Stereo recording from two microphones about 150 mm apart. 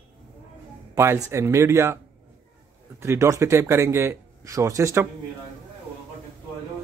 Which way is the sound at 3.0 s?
20° right (ahead or behind).